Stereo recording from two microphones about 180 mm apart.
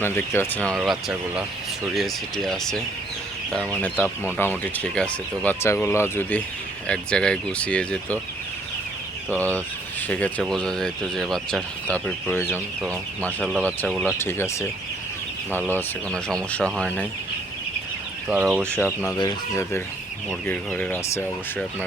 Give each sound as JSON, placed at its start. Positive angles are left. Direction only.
{"t": 0.0, "sound": "speech", "side_deg": 10}
{"t": 0.8, "sound": "speech", "side_deg": -5}
{"t": 3.8, "sound": "speech", "side_deg": 10}
{"t": 9.3, "sound": "speech", "side_deg": 10}
{"t": 14.2, "sound": "speech", "side_deg": 15}
{"t": 16.1, "sound": "speech", "side_deg": 5}
{"t": 18.3, "sound": "speech", "side_deg": -5}
{"t": 19.0, "sound": "speech", "side_deg": 20}
{"t": 20.5, "sound": "speech", "side_deg": 10}